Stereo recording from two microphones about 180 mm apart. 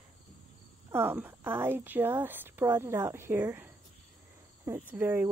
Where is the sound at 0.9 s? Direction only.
10° right (ahead or behind).